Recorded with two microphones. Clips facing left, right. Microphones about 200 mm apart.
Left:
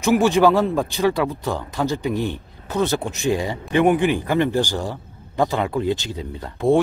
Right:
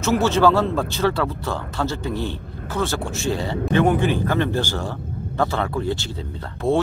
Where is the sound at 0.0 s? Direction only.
15° left (ahead or behind).